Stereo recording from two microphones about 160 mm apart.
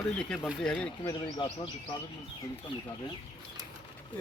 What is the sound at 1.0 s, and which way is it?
Speech, 25° left (ahead or behind).